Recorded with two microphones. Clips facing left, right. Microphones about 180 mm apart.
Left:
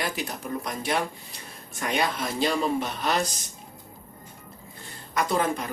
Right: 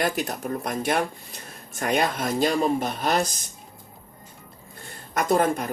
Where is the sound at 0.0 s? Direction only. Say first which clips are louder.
Right 5 dB; 50° right (ahead or behind).